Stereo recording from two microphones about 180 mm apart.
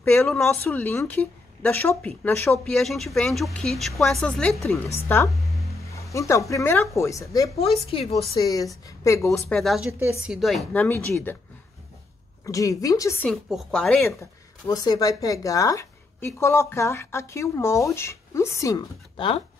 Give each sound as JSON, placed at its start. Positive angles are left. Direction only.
{"t": 0.0, "sound": "a woman's voice", "side_deg": 10}
{"t": 7.5, "sound": "a woman's voice", "side_deg": 35}
{"t": 8.4, "sound": "a woman's voice", "side_deg": 20}
{"t": 9.5, "sound": "speech", "side_deg": 0}
{"t": 9.8, "sound": "speech", "side_deg": -15}
{"t": 12.4, "sound": "a woman's voice", "side_deg": 20}
{"t": 13.3, "sound": "speech", "side_deg": 0}
{"t": 14.7, "sound": "a woman's voice", "side_deg": 20}